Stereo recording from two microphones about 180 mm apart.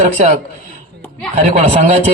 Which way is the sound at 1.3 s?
40° right (ahead or behind).